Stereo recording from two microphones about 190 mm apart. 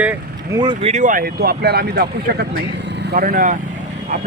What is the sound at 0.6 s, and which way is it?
Speech, 25° right (ahead or behind).